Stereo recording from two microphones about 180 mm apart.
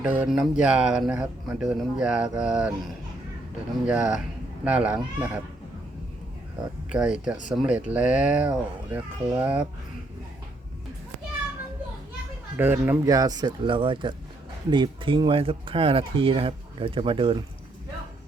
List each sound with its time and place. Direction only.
0.0 s speech: 5° right (ahead or behind)
3.8 s speech: 5° right (ahead or behind)
6.9 s speech: 5° right (ahead or behind)
12.5 s speech: 10° right (ahead or behind); by 17.3 s 30° right (ahead or behind)